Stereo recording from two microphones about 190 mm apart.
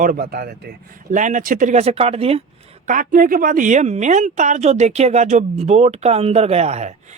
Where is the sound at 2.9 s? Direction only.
45° right (ahead or behind).